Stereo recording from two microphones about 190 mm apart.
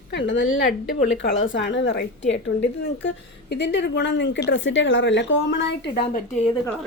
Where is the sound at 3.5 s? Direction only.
65° left (ahead or behind).